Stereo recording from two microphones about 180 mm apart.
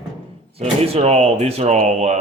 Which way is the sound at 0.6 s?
35° right (ahead or behind).